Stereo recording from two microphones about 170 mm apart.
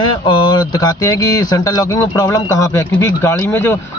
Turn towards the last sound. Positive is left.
turn(degrees=15)  # may be behind; listen again after turning